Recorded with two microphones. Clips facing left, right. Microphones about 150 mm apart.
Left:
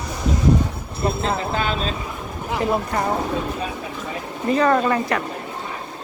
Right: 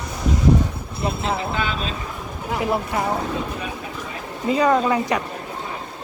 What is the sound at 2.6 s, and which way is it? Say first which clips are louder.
Speech: left 1 dB; 5° right (ahead or behind).